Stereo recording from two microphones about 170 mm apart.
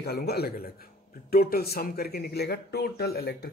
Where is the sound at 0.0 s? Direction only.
70° left (ahead or behind).